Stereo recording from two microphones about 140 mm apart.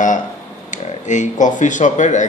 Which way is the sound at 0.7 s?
60° left (ahead or behind).